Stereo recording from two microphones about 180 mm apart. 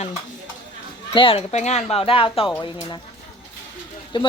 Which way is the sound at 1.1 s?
30° left (ahead or behind).